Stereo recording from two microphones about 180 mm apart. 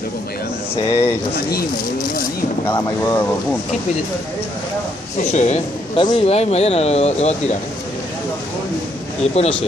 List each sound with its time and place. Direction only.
0.8 s speech: 15° left (ahead or behind)
1.5 s speech: 55° left (ahead or behind)
2.7 s speech: 15° left (ahead or behind)
5.3 s speech: 40° left (ahead or behind)
5.9 s speech: 30° left (ahead or behind)
9.3 s speech: 30° left (ahead or behind)